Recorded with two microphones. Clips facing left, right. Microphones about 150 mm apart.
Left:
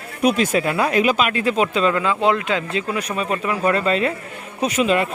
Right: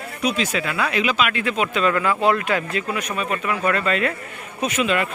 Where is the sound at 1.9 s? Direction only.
20° left (ahead or behind).